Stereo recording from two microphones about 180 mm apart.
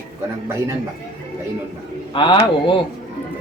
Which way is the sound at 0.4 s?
15° right (ahead or behind).